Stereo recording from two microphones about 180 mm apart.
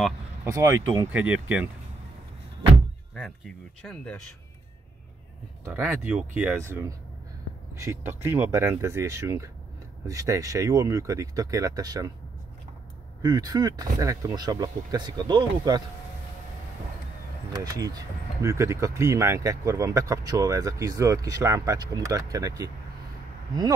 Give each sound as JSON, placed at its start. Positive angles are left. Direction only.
{"t": 0.4, "sound": "speech", "side_deg": -15}
{"t": 3.8, "sound": "speech", "side_deg": 5}
{"t": 5.7, "sound": "speech", "side_deg": -10}
{"t": 13.2, "sound": "speech", "side_deg": -20}
{"t": 17.5, "sound": "speech", "side_deg": -20}